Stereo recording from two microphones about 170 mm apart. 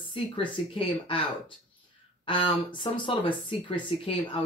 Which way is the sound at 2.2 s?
30° left (ahead or behind).